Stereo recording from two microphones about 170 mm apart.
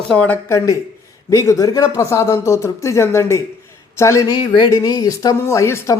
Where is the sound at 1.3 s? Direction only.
15° left (ahead or behind).